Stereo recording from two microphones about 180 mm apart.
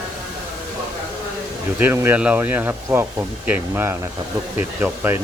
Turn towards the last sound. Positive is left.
turn(degrees=-10)  # may be behind; listen again after turning